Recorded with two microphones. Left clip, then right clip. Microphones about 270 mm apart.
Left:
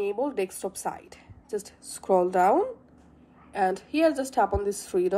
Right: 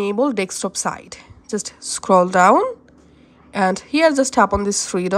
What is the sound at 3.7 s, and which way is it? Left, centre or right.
A woman's voice, right.